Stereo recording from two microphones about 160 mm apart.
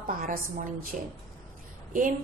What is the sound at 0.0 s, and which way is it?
Speech, 65° right (ahead or behind).